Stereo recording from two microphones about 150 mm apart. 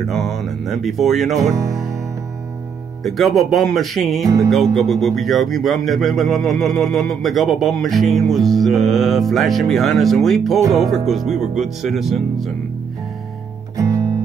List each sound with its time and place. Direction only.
0.1 s speech: centre (ahead or behind)
1.6 s speech: 20° right (ahead or behind)
3.0 s speech: centre (ahead or behind)
13.7 s music: 25° right (ahead or behind)